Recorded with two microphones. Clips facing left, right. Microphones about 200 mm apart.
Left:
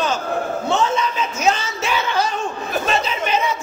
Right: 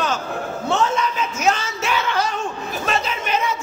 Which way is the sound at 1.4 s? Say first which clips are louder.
Left 1 dB; 30° left (ahead or behind).